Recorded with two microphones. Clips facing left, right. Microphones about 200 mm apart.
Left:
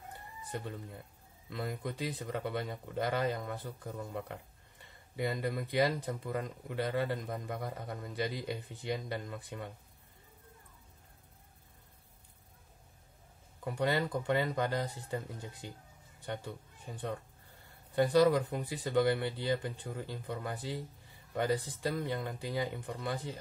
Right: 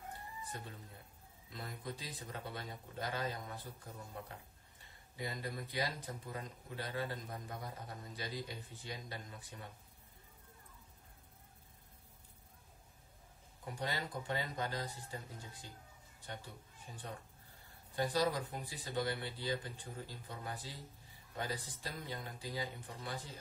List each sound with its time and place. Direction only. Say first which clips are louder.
1.5 s speech: left 8 dB; 65° left (ahead or behind)
13.7 s speech: left 9 dB; 65° left (ahead or behind)
16.8 s speech: left 9 dB; 60° left (ahead or behind)